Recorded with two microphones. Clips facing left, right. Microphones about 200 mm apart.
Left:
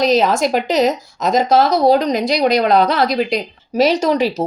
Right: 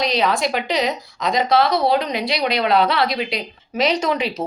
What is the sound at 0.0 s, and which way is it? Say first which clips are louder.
A woman's voice: left 6 dB; 45° left (ahead or behind).